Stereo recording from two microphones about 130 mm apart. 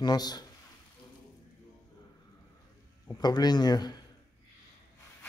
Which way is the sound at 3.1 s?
30° left (ahead or behind).